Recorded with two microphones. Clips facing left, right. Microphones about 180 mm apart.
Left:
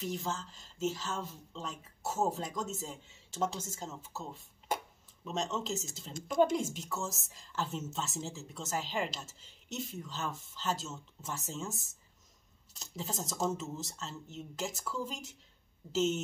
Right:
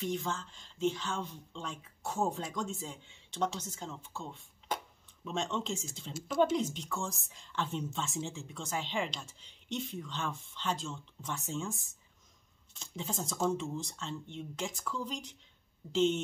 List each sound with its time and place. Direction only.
0.0 s speech: centre (ahead or behind)
5.6 s speech: 40° left (ahead or behind)
5.9 s speech: centre (ahead or behind)